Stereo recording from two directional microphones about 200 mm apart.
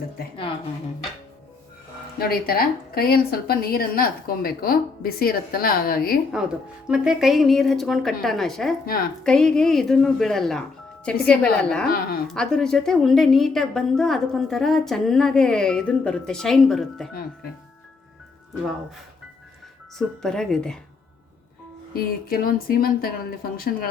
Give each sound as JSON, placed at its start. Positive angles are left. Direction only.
{"t": 2.1, "sound": "a woman's voice", "side_deg": 50}
{"t": 6.3, "sound": "a woman's voice", "side_deg": -5}
{"t": 20.0, "sound": "a woman's voice", "side_deg": 0}
{"t": 21.9, "sound": "a woman's voice", "side_deg": 45}